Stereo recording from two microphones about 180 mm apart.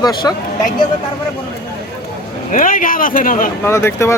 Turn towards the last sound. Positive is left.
turn(degrees=15)  # may be behind; listen again after turning